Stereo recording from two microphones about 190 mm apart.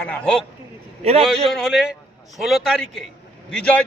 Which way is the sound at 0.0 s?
5° left (ahead or behind).